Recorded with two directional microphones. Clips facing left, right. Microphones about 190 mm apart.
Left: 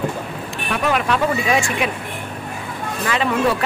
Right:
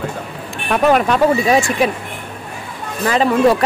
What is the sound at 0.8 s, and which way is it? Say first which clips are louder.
Speech: right 6 dB; 45° right (ahead or behind).